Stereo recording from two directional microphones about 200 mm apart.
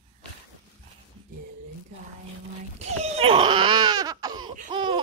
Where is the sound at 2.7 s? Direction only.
30° right (ahead or behind).